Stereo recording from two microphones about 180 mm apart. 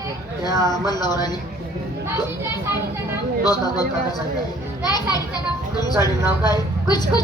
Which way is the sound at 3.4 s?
20° left (ahead or behind).